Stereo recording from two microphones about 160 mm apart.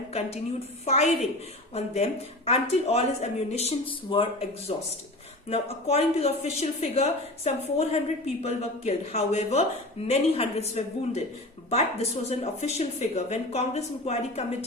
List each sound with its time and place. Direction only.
0.1 s a woman's voice: 40° left (ahead or behind)